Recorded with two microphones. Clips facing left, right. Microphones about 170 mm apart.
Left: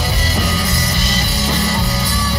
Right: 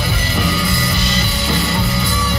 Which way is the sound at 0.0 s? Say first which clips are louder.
Even; 40° left (ahead or behind).